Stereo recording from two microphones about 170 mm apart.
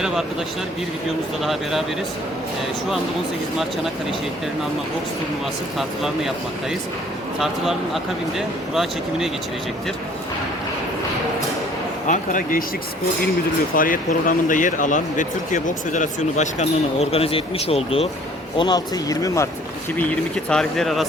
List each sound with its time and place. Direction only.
7.3 s speech: centre (ahead or behind)
12.0 s speech: 50° left (ahead or behind)
13.7 s speech: 55° left (ahead or behind); by 19.5 s 20° left (ahead or behind)
20.0 s speech: 5° left (ahead or behind)